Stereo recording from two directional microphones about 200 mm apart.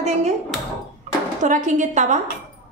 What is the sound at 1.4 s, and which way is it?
Speech, 40° right (ahead or behind).